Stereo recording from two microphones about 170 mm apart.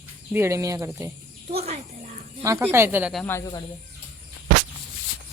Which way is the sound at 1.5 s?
35° right (ahead or behind).